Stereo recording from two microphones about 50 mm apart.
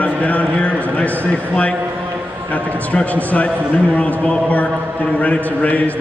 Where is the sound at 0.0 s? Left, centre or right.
Left.